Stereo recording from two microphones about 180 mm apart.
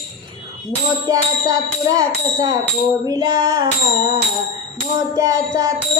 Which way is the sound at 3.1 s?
20° right (ahead or behind).